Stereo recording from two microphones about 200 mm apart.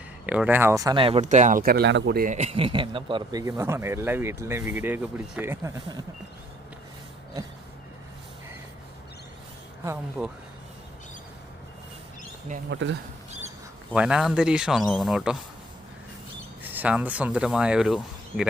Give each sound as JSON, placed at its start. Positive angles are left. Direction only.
{"t": 0.3, "sound": "speech", "side_deg": -5}
{"t": 2.2, "sound": "speech", "side_deg": -35}
{"t": 9.8, "sound": "speech", "side_deg": -10}
{"t": 12.7, "sound": "speech", "side_deg": -65}
{"t": 13.9, "sound": "speech", "side_deg": -5}
{"t": 16.7, "sound": "speech", "side_deg": -10}